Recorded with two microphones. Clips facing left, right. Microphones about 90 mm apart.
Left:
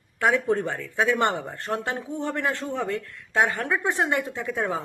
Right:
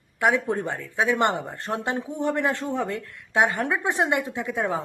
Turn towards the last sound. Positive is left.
turn(degrees=-20)  # may be behind; listen again after turning